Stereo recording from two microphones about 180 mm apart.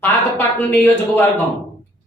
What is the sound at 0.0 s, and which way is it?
A woman's voice, 10° left (ahead or behind).